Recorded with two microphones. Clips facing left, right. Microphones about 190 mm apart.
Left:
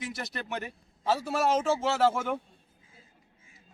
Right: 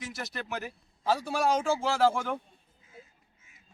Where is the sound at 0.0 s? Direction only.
Centre (ahead or behind).